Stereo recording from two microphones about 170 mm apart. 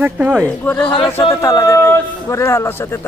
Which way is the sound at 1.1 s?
15° left (ahead or behind).